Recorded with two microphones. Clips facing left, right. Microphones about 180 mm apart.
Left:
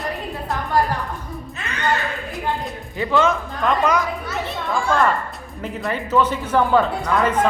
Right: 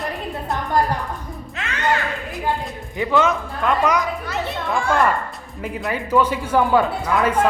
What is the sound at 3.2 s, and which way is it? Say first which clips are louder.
Speech: left 1 dB; 15° right (ahead or behind).